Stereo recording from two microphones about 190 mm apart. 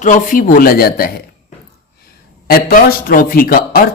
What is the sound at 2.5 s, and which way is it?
A woman's voice, 50° left (ahead or behind).